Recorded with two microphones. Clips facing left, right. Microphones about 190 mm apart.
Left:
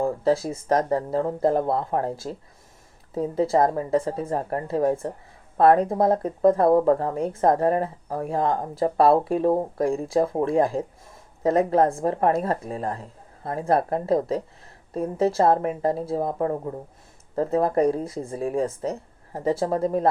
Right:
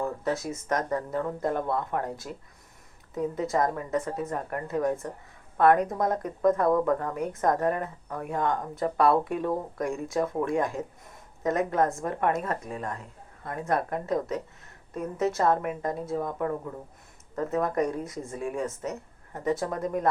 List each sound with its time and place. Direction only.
0.0 s speech: 30° left (ahead or behind)